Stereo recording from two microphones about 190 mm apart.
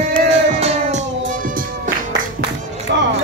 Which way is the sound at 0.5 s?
35° right (ahead or behind).